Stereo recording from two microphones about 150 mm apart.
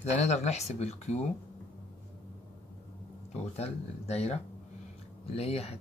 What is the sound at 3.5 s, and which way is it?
Speech, 45° left (ahead or behind).